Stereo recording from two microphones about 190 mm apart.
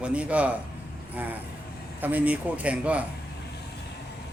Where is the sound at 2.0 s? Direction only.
10° right (ahead or behind).